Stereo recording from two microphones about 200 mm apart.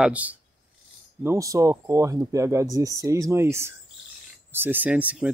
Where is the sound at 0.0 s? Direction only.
5° right (ahead or behind).